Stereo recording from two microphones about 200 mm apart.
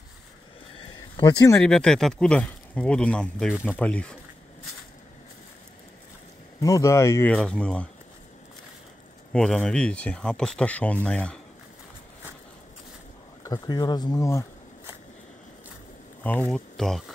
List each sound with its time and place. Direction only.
0.7 s a sound: 20° left (ahead or behind)
1.6 s speech: 5° left (ahead or behind)
6.6 s speech: 15° left (ahead or behind)
9.3 s speech: 5° left (ahead or behind)
13.4 s speech: 20° left (ahead or behind)
16.3 s speech: 5° left (ahead or behind)